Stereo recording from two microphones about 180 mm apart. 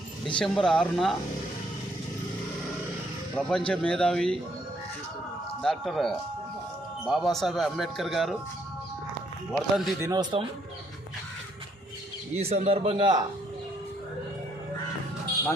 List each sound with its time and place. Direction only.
0.3 s speech: 5° left (ahead or behind)
3.4 s speech: 5° left (ahead or behind)
5.6 s speech: centre (ahead or behind)
9.5 s speech: centre (ahead or behind)
10.0 s a man's voice: 20° right (ahead or behind)
12.4 s speech: 35° right (ahead or behind)